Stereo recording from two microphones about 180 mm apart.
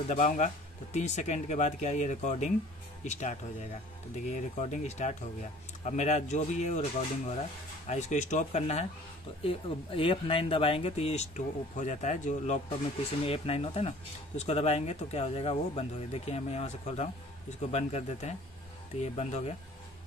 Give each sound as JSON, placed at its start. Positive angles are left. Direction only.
{"t": 0.1, "sound": "speech", "side_deg": 45}
{"t": 4.6, "sound": "speech", "side_deg": 40}